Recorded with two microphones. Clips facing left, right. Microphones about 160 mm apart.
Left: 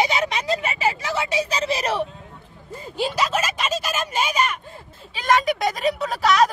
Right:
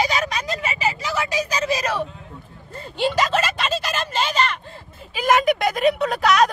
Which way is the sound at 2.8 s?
10° left (ahead or behind).